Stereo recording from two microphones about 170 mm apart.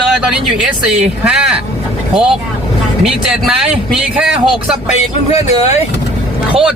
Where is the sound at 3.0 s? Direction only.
Centre (ahead or behind).